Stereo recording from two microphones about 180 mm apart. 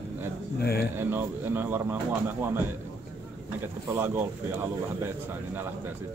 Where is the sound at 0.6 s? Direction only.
60° left (ahead or behind).